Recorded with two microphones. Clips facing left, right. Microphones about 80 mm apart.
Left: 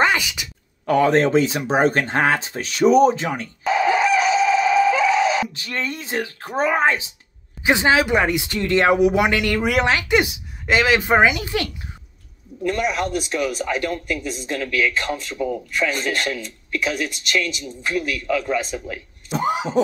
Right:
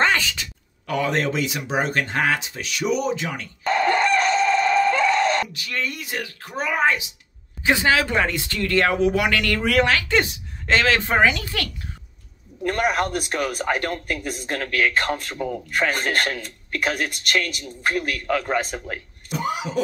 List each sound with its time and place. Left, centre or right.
0.0 s a sound: centre
0.8 s speech: left
3.6 s a sound: centre
5.5 s speech: left
12.6 s speech: right
19.3 s speech: left